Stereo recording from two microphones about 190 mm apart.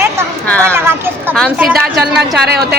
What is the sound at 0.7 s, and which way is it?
Speech, 10° right (ahead or behind).